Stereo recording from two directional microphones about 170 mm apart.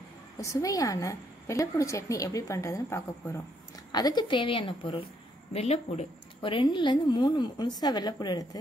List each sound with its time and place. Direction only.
0.4 s a woman's voice: 20° left (ahead or behind)